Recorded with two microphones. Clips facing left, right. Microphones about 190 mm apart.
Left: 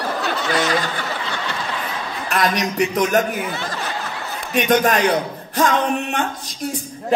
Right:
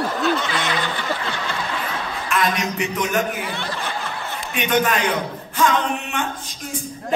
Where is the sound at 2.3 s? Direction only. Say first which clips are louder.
Left 2 dB; 40° left (ahead or behind).